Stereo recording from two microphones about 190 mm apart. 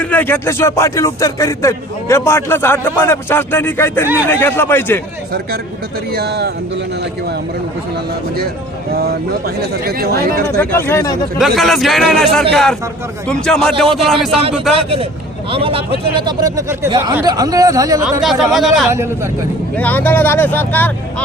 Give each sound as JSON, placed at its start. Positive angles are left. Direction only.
{"t": 0.0, "sound": "speech", "side_deg": 10}
{"t": 6.1, "sound": "speech", "side_deg": -55}
{"t": 8.9, "sound": "speech", "side_deg": -55}
{"t": 10.6, "sound": "speech", "side_deg": 10}
{"t": 11.3, "sound": "a man's voice", "side_deg": 0}
{"t": 14.8, "sound": "speech", "side_deg": -30}
{"t": 18.2, "sound": "a man's voice", "side_deg": 0}
{"t": 18.9, "sound": "speech", "side_deg": -15}
{"t": 19.7, "sound": "speech", "side_deg": 10}